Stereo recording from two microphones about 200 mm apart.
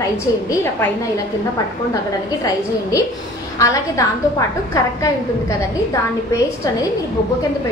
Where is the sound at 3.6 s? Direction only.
15° left (ahead or behind).